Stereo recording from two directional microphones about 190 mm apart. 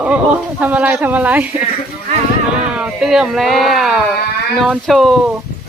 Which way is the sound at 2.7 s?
5° right (ahead or behind).